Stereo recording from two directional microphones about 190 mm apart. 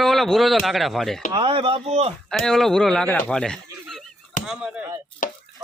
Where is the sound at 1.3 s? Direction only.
30° right (ahead or behind).